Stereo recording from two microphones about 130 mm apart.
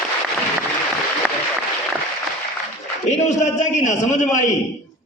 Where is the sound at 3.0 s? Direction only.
65° left (ahead or behind).